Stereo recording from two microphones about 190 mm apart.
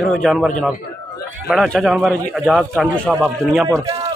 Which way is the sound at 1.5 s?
Centre (ahead or behind).